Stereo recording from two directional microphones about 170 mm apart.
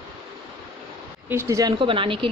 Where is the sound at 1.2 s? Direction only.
15° right (ahead or behind).